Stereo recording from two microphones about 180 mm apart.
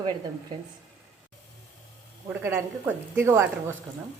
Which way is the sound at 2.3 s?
15° right (ahead or behind).